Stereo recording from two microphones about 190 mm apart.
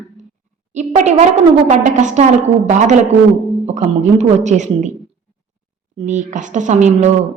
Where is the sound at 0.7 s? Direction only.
35° right (ahead or behind).